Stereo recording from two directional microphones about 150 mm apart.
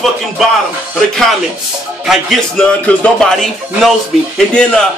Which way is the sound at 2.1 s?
5° left (ahead or behind).